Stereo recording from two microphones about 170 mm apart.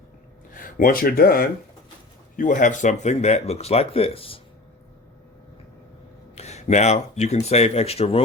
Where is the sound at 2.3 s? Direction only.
50° left (ahead or behind); by 4.4 s 35° left (ahead or behind).